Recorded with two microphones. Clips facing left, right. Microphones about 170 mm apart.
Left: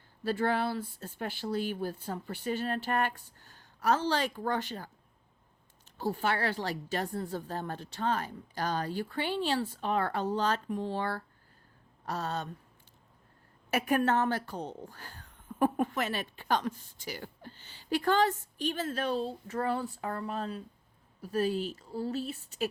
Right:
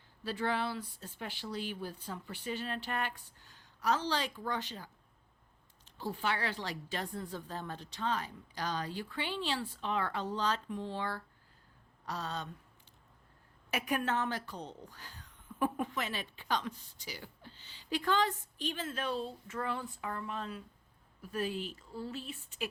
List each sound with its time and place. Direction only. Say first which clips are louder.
0.3 s speech: left 5 dB; 45° left (ahead or behind)
6.0 s speech: left 5 dB; 45° left (ahead or behind)
13.7 s speech: left 6 dB; 50° left (ahead or behind)